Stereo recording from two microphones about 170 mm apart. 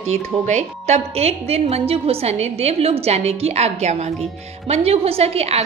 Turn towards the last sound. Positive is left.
turn(degrees=-35)  # may be behind; listen again after turning